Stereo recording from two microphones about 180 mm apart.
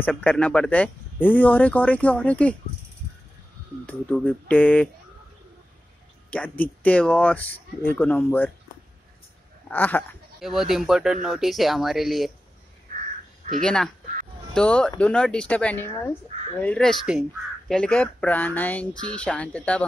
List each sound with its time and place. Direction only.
0.1 s speech: 5° left (ahead or behind)
3.8 s speech: 10° left (ahead or behind)
6.3 s speech: 10° left (ahead or behind)
9.7 s speech: 10° left (ahead or behind)
10.4 s speech: centre (ahead or behind)
13.6 s speech: 5° left (ahead or behind)
16.3 s a sound: 40° right (ahead or behind)
16.6 s speech: 5° left (ahead or behind)